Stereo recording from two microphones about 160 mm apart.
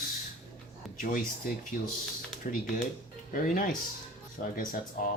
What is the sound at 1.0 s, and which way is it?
Speech, 60° left (ahead or behind).